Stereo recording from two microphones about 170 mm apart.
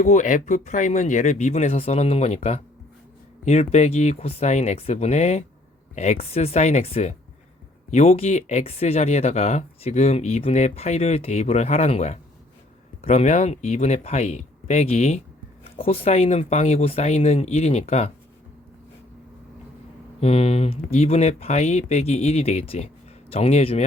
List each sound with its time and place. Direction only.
0.0 s speech: 45° left (ahead or behind)
20.2 s speech: 40° left (ahead or behind)